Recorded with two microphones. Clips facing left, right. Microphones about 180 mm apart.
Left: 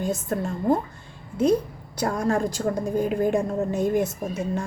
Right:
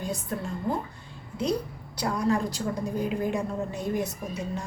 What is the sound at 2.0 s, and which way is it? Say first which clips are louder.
A woman's voice: left 3 dB; 50° left (ahead or behind).